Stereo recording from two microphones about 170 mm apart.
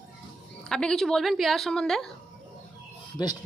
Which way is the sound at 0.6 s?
5° left (ahead or behind).